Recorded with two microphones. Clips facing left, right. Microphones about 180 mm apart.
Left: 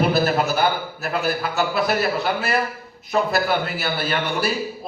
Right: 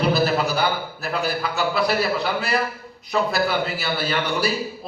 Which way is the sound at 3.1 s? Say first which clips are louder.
Left 1 dB; 50° left (ahead or behind).